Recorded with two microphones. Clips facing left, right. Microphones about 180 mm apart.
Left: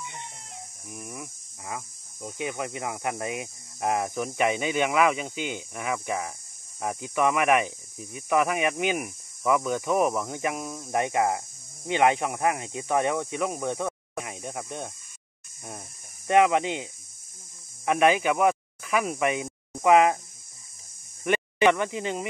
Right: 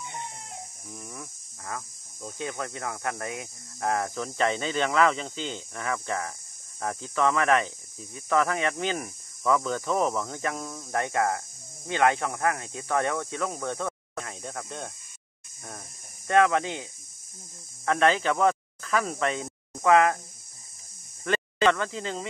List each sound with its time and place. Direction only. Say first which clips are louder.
0.8 s cricket: left 5 dB; 15° left (ahead or behind)
2.2 s speech: left 2 dB; 15° left (ahead or behind)
16.3 s speech: left 2 dB; 15° left (ahead or behind)
21.2 s speech: left 2 dB; 15° left (ahead or behind)